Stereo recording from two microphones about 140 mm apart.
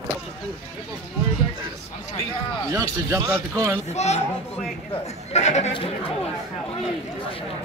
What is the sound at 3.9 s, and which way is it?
Speech, 50° left (ahead or behind).